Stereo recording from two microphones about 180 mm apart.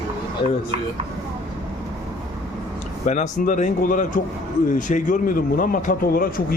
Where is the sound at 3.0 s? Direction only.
45° left (ahead or behind).